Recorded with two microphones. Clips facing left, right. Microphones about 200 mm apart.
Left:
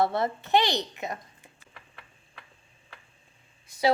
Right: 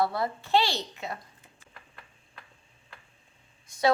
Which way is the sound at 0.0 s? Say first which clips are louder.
Left 2 dB; 25° left (ahead or behind).